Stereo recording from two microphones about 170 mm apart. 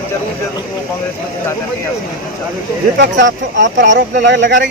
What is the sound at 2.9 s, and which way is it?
Speech, 90° right.